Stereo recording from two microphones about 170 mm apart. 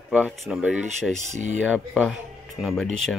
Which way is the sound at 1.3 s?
45° right (ahead or behind).